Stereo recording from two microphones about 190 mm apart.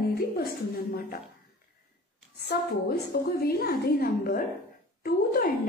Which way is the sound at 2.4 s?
60° left (ahead or behind).